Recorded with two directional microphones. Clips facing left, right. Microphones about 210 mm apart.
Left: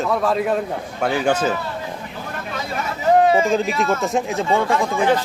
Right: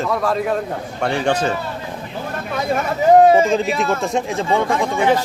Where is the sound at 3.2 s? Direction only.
40° right (ahead or behind).